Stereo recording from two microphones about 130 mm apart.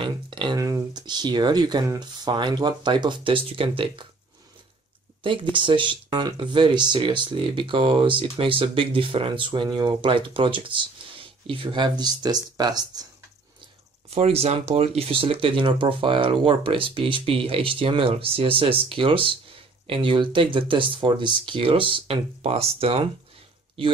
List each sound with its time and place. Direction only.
0.0 s a sound: 40° right (ahead or behind)
0.6 s speech: 25° right (ahead or behind); by 4.1 s 45° right (ahead or behind)
5.2 s speech: 40° right (ahead or behind)
14.1 s speech: 50° right (ahead or behind)